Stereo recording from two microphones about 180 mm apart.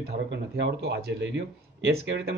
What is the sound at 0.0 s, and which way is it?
Speech, 65° right (ahead or behind).